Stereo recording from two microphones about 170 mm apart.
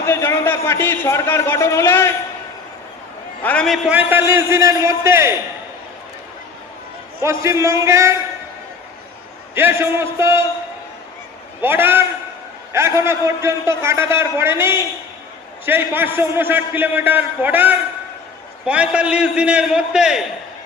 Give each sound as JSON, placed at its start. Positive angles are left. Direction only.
{"t": 0.0, "sound": "a man's voice", "side_deg": 15}
{"t": 3.4, "sound": "a man's voice", "side_deg": 5}
{"t": 3.8, "sound": "a man's voice", "side_deg": -10}
{"t": 7.2, "sound": "a man's voice", "side_deg": -15}
{"t": 9.6, "sound": "a man's voice", "side_deg": -15}
{"t": 11.6, "sound": "a man's voice", "side_deg": -10}